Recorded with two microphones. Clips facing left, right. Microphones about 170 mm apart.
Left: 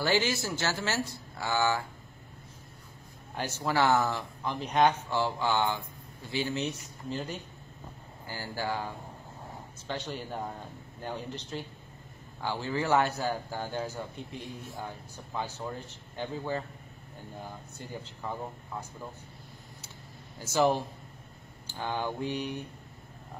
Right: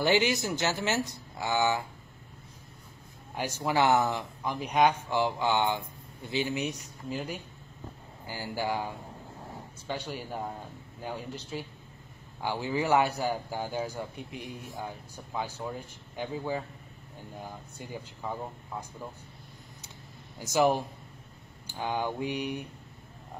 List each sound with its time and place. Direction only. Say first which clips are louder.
0.0 s speech: right 3 dB; 20° right (ahead or behind)
3.3 s speech: right 1 dB; 15° right (ahead or behind)
20.3 s speech: right 1 dB; 15° right (ahead or behind)